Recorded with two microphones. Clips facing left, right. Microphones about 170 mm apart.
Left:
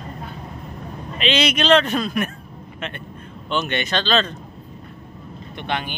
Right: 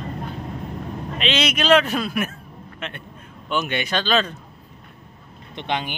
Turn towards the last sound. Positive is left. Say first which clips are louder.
# even
turn(degrees=-15)  # may be behind; listen again after turning